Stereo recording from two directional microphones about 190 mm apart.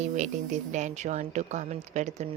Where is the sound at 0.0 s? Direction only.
40° right (ahead or behind).